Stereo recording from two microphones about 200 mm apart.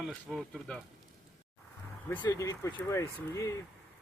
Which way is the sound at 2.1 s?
20° left (ahead or behind).